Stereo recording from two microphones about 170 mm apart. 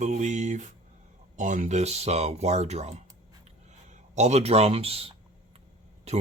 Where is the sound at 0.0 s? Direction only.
45° right (ahead or behind).